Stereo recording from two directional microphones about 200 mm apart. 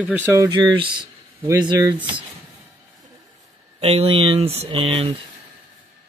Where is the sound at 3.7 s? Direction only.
30° right (ahead or behind).